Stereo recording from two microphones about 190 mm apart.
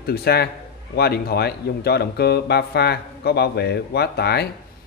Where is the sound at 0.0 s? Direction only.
55° left (ahead or behind).